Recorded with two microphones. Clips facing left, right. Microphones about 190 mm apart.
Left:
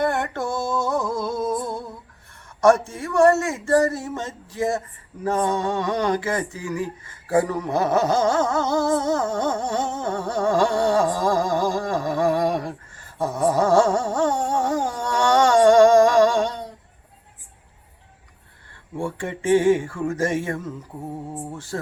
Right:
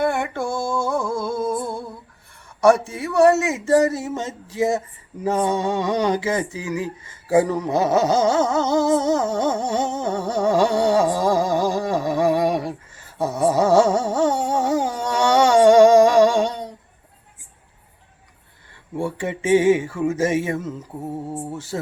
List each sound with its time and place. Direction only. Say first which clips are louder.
0.0 s a sound: right 1 dB; 5° right (ahead or behind)
2.6 s humming: right 1 dB; 15° right (ahead or behind)
2.9 s a man's voice: right 1 dB; 5° right (ahead or behind)
3.2 s humming: right 2 dB; 15° right (ahead or behind)
13.1 s carnatic music: right 2 dB; 10° right (ahead or behind)
18.9 s humming: right 3 dB; 10° right (ahead or behind)
19.4 s a sound: right 1 dB; 20° right (ahead or behind)
19.6 s humming: right 2 dB; 5° right (ahead or behind)